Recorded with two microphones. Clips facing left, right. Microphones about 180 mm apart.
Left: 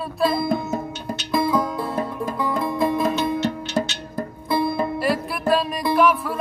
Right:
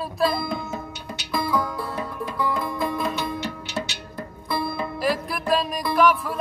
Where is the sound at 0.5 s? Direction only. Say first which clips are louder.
Left 6 dB; 45° left (ahead or behind).